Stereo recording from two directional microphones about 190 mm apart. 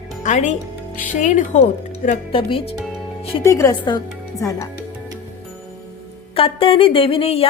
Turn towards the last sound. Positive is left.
turn(degrees=30)  # may be behind; listen again after turning